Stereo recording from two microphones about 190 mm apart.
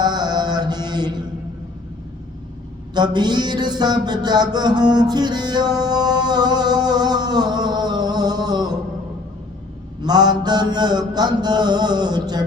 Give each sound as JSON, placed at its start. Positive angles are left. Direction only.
{"t": 0.0, "sound": "mantra", "side_deg": -20}
{"t": 2.9, "sound": "a sound", "side_deg": -20}
{"t": 10.0, "sound": "mantra", "side_deg": -20}